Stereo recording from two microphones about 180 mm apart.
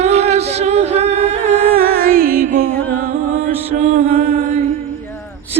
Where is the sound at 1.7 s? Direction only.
55° right (ahead or behind).